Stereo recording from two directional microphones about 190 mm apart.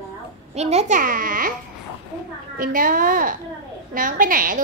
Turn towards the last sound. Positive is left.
turn(degrees=-45)  # may be behind; listen again after turning